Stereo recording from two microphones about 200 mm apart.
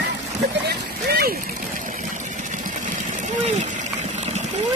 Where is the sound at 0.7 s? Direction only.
50° right (ahead or behind).